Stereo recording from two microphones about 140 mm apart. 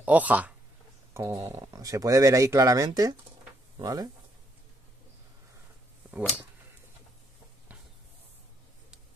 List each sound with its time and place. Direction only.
0.0 s speech: 10° right (ahead or behind); by 4.1 s 25° right (ahead or behind)